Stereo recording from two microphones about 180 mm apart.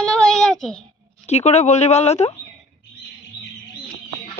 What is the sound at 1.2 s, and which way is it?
Speech, 40° left (ahead or behind).